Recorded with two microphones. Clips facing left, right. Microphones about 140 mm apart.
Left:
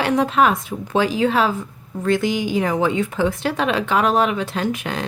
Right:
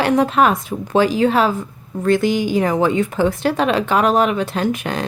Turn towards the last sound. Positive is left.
turn(degrees=-40)  # may be behind; listen again after turning